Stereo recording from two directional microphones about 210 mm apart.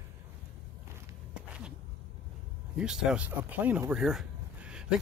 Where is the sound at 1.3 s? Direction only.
5° right (ahead or behind).